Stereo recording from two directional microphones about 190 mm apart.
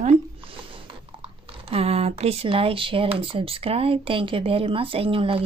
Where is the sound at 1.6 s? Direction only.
30° right (ahead or behind).